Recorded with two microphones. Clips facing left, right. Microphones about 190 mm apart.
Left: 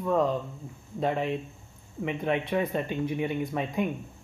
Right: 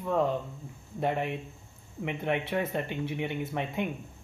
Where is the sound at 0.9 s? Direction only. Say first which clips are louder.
Left 2 dB; 15° right (ahead or behind).